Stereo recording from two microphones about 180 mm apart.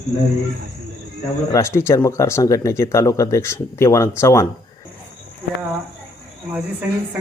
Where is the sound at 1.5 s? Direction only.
15° left (ahead or behind).